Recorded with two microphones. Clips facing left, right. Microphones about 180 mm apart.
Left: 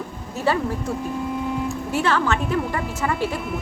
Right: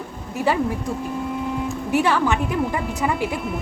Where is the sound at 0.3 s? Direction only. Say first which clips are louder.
Right 1 dB; 15° right (ahead or behind).